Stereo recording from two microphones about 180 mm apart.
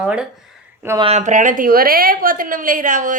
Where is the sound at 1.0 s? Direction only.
40° right (ahead or behind).